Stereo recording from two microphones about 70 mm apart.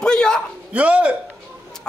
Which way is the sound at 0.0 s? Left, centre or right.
Centre.